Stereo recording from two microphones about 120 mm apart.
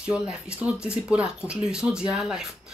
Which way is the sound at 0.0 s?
10° right (ahead or behind).